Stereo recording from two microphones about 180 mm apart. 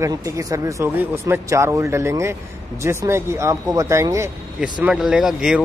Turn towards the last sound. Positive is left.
turn(degrees=-5)  # may be behind; listen again after turning